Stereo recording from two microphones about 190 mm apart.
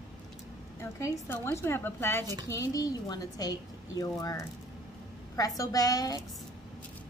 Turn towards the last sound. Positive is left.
turn(degrees=20)  # may be behind; listen again after turning